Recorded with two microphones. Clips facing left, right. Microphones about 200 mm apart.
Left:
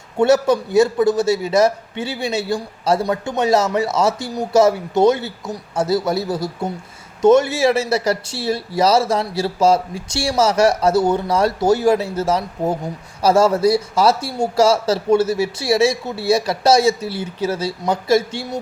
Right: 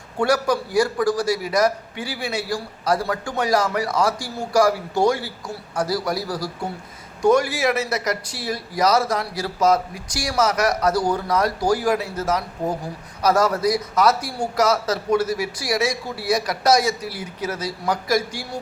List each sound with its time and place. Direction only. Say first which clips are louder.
0.2 s speech: left 6 dB; 25° left (ahead or behind)